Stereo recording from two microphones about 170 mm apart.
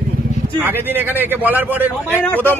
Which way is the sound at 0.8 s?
10° right (ahead or behind).